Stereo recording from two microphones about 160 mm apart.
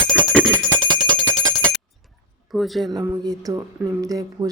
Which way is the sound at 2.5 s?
Centre (ahead or behind).